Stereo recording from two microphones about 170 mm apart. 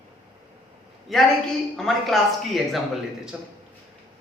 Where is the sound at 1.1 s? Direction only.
Centre (ahead or behind).